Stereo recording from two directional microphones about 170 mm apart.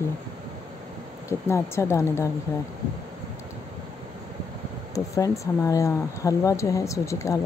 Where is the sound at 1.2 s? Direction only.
15° left (ahead or behind).